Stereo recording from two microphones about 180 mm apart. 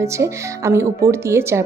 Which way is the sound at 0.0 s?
15° right (ahead or behind).